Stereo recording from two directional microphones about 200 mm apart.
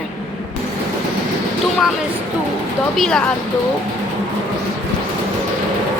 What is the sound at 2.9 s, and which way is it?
Speech, 5° left (ahead or behind).